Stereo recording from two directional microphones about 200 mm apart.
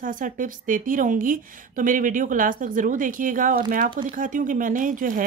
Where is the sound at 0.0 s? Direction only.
40° right (ahead or behind).